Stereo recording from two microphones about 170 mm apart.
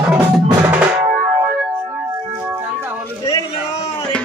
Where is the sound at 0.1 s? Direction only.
10° right (ahead or behind).